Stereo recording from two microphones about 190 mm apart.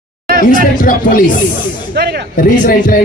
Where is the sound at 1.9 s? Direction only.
60° right (ahead or behind).